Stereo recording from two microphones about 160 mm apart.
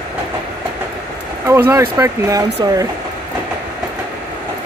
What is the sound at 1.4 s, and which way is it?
Speech, 15° right (ahead or behind).